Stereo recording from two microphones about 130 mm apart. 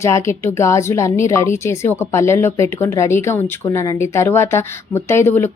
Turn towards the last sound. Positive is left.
turn(degrees=20)  # may be behind; listen again after turning